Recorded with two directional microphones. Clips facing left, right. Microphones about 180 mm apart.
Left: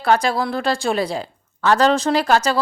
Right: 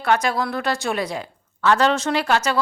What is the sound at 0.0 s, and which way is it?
A woman's voice, 30° left (ahead or behind).